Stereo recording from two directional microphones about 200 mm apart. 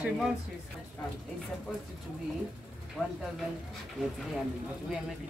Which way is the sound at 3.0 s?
5° right (ahead or behind).